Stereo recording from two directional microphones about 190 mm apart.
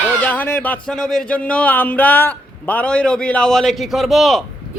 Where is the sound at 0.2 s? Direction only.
10° left (ahead or behind).